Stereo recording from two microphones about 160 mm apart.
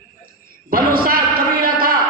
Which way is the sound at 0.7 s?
65° right (ahead or behind).